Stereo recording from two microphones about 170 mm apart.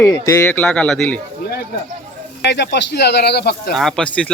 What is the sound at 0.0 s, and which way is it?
Speech, 10° left (ahead or behind).